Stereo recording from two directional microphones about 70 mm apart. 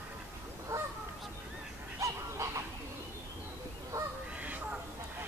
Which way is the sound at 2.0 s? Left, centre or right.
Right.